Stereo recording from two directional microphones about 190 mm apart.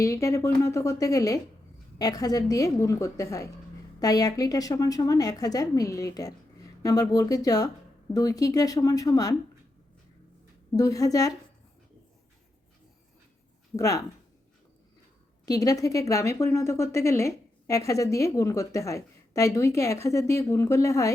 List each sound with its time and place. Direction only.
0.0 s a woman's voice: 15° left (ahead or behind)
10.8 s a woman's voice: 20° left (ahead or behind)
13.7 s a woman's voice: 15° left (ahead or behind)
15.4 s a woman's voice: 20° left (ahead or behind)